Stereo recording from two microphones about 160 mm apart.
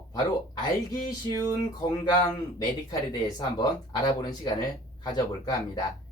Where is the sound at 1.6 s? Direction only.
25° left (ahead or behind).